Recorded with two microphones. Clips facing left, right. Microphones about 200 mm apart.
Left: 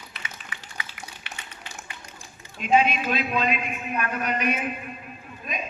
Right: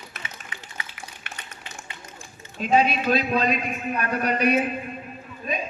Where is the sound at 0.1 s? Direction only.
45° right (ahead or behind).